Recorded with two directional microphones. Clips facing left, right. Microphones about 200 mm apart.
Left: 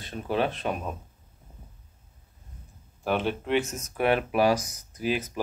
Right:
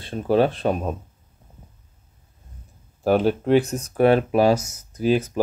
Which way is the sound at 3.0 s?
40° right (ahead or behind).